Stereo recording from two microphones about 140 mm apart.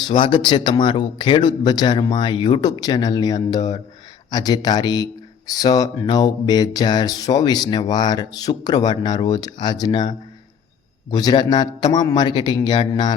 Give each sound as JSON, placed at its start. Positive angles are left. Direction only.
{"t": 0.1, "sound": "speech", "side_deg": 35}